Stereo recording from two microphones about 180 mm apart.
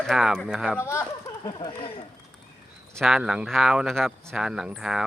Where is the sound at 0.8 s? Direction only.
15° left (ahead or behind).